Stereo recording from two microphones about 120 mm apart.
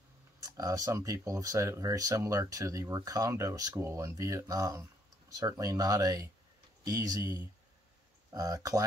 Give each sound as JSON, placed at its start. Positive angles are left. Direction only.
{"t": 0.4, "sound": "speech", "side_deg": -30}